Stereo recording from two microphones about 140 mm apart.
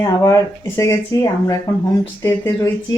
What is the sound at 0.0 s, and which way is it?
Speech, 20° left (ahead or behind).